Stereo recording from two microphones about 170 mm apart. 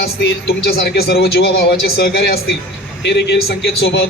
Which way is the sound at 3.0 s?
85° left.